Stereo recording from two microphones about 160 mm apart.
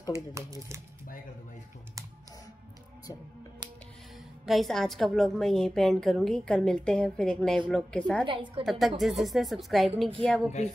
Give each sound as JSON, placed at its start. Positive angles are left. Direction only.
{"t": 4.5, "sound": "a woman's voice", "side_deg": 0}
{"t": 8.3, "sound": "a woman's voice", "side_deg": -30}
{"t": 8.6, "sound": "a woman's voice", "side_deg": 0}